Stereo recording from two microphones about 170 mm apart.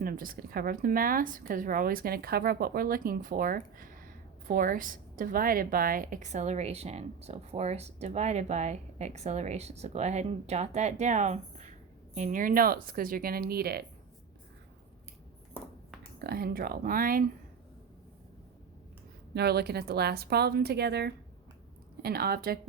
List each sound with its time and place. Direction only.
0.0 s a woman's voice: 55° right (ahead or behind)
16.1 s a woman's voice: 65° right (ahead or behind)
19.3 s a woman's voice: 75° right (ahead or behind)
22.0 s a woman's voice: 65° right (ahead or behind)